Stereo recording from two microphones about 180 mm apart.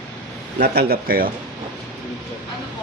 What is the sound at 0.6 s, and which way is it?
Speech, 65° right (ahead or behind).